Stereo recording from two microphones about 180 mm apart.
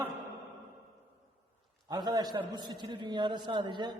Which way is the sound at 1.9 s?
25° right (ahead or behind).